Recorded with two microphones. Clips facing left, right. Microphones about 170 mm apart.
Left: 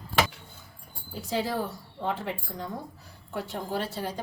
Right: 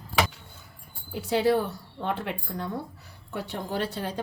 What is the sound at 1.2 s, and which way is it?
A woman's voice, 65° right (ahead or behind).